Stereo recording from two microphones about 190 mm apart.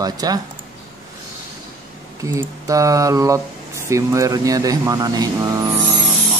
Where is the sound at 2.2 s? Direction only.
15° right (ahead or behind).